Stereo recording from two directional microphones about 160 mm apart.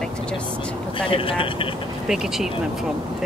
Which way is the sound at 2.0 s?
5° right (ahead or behind).